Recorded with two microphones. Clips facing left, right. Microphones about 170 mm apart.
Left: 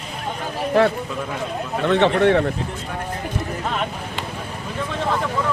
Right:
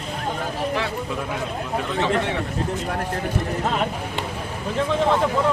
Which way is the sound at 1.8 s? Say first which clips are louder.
Left 9 dB; 65° left (ahead or behind).